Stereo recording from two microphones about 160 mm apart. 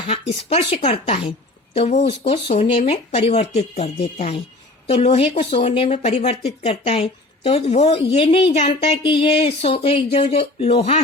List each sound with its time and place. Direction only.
0.1 s speech: 40° left (ahead or behind)